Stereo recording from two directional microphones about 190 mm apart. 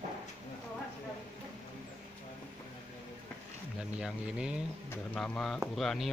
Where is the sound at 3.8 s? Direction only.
5° right (ahead or behind).